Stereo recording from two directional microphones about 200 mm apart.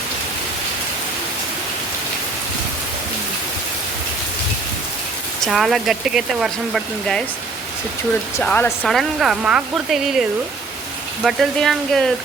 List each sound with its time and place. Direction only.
5.5 s speech: centre (ahead or behind)
8.4 s speech: 10° left (ahead or behind)